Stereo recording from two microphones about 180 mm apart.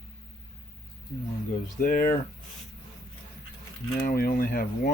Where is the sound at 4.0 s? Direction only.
50° left (ahead or behind).